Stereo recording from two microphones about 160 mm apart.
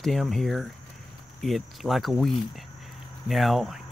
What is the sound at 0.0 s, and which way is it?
Speech, centre (ahead or behind).